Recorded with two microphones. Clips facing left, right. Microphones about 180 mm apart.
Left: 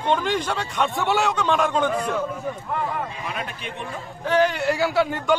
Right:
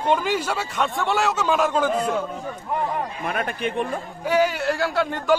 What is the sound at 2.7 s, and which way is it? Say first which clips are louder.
Speech: right 3 dB; 20° right (ahead or behind).